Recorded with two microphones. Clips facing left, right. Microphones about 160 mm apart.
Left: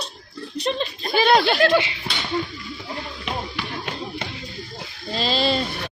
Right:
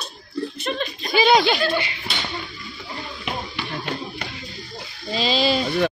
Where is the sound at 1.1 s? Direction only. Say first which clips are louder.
Right 1 dB; centre (ahead or behind).